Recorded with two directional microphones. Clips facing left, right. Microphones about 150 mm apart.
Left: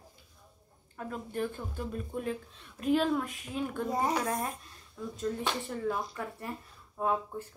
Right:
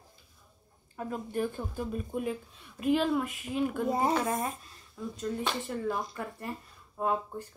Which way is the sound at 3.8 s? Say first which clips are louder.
Right 1 dB; 25° right (ahead or behind).